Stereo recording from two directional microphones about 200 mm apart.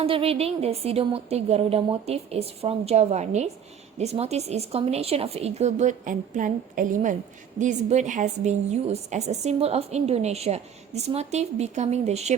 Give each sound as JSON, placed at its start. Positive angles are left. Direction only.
{"t": 0.0, "sound": "a woman's voice", "side_deg": -30}